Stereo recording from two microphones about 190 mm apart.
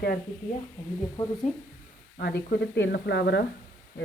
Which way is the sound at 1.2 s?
25° left (ahead or behind).